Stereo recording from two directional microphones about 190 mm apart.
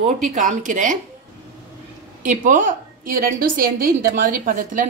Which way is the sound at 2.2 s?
45° right (ahead or behind).